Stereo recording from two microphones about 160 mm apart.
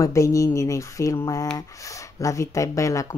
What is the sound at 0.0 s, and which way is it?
Speech, 20° left (ahead or behind).